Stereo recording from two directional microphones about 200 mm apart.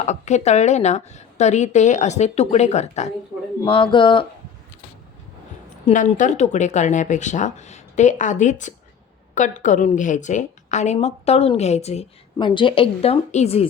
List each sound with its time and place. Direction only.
0.0 s speech: 35° left (ahead or behind)
5.7 s speech: 40° left (ahead or behind)